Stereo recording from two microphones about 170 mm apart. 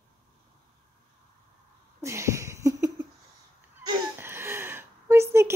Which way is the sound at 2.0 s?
15° right (ahead or behind).